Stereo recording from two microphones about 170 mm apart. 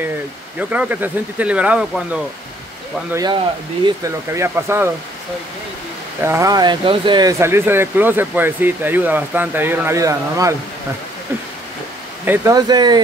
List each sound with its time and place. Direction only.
0.6 s speech: 10° right (ahead or behind)
3.1 s speech: 20° right (ahead or behind)
6.2 s speech: 15° right (ahead or behind)
12.3 s speech: 20° right (ahead or behind)